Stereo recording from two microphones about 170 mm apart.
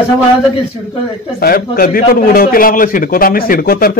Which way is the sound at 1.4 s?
60° left (ahead or behind).